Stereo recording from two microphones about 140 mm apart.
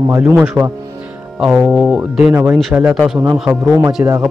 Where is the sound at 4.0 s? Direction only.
15° right (ahead or behind).